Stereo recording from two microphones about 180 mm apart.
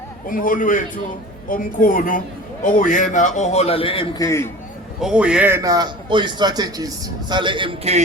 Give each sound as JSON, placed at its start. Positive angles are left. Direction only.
{"t": 0.3, "sound": "a man's voice", "side_deg": 50}
{"t": 4.9, "sound": "a man's voice", "side_deg": -5}